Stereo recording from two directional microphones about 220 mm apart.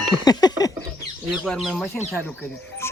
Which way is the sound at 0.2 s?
20° left (ahead or behind).